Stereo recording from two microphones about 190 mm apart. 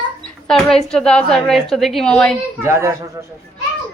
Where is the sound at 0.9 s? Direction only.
5° left (ahead or behind).